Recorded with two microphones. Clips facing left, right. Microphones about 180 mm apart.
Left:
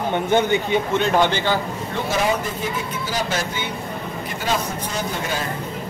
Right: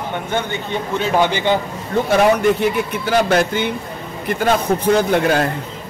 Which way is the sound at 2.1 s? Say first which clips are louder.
Right 9 dB; 65° right (ahead or behind).